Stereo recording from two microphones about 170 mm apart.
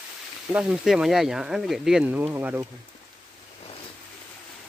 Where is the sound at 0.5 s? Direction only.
5° right (ahead or behind).